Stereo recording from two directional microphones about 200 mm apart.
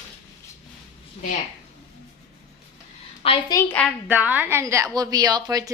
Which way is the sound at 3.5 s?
10° left (ahead or behind).